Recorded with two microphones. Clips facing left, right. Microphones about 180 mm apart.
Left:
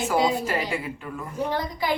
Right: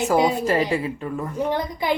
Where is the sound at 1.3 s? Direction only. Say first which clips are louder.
Right 1 dB; 20° right (ahead or behind).